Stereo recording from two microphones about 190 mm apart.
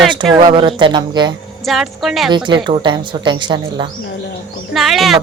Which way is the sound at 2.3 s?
25° right (ahead or behind).